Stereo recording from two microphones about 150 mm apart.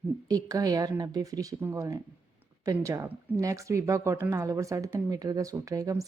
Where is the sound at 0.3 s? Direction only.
25° right (ahead or behind).